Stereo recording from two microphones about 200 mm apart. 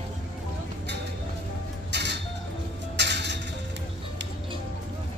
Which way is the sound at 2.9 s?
60° right (ahead or behind).